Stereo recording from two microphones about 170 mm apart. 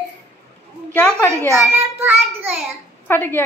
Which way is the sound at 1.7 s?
10° right (ahead or behind).